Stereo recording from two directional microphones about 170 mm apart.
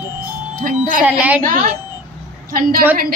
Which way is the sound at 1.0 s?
10° right (ahead or behind).